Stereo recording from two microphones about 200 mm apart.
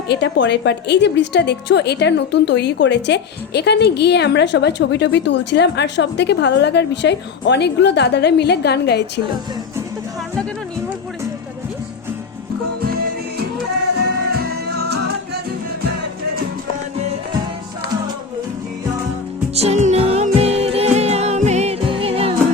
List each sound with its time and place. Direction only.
0.1 s a woman's voice: 60° left (ahead or behind)
14.0 s music: 55° right (ahead or behind)
19.5 s music: 35° right (ahead or behind)